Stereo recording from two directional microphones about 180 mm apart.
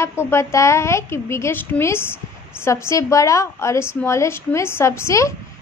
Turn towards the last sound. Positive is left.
turn(degrees=15)  # may be behind; listen again after turning